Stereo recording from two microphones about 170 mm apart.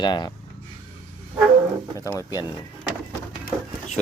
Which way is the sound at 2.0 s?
20° left (ahead or behind).